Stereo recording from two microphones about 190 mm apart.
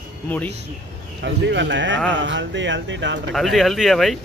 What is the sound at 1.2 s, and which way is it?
Speech, 70° right (ahead or behind).